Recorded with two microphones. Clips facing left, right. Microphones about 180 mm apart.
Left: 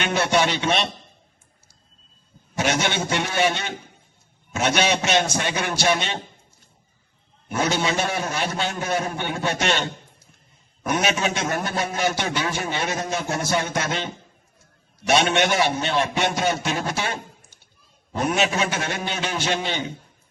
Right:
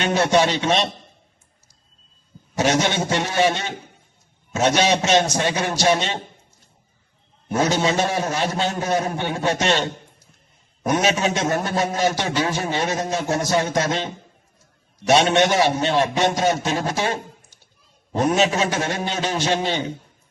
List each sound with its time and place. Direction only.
0.0 s a man's voice: 35° right (ahead or behind)
2.6 s a man's voice: 35° right (ahead or behind)
7.4 s a man's voice: 40° right (ahead or behind)